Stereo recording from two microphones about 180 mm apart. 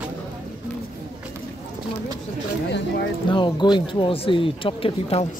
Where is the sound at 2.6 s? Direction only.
70° left (ahead or behind).